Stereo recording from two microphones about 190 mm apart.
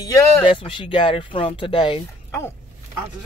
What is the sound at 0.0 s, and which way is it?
Speech, 20° left (ahead or behind).